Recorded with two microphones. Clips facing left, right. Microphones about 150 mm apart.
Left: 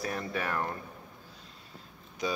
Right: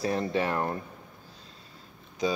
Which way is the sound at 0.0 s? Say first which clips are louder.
Right 6 dB; 25° right (ahead or behind).